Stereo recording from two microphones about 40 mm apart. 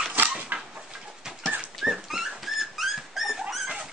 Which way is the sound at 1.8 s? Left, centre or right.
Centre.